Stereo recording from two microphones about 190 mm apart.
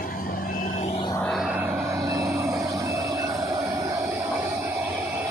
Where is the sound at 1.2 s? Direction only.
Centre (ahead or behind).